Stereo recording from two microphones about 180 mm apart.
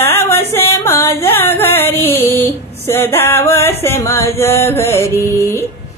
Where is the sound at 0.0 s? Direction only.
15° left (ahead or behind).